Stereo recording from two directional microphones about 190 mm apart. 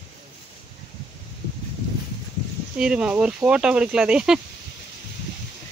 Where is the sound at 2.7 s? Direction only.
5° right (ahead or behind).